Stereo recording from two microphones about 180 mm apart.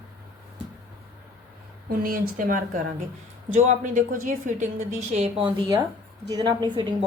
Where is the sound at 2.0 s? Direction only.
55° right (ahead or behind).